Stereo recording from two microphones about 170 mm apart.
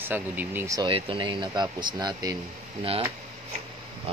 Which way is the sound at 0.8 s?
30° right (ahead or behind).